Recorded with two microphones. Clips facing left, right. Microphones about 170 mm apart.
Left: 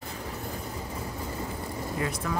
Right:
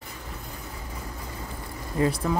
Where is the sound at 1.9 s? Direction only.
30° right (ahead or behind).